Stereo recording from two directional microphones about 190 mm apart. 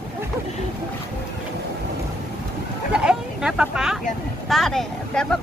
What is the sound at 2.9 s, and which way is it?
Speech, 5° right (ahead or behind).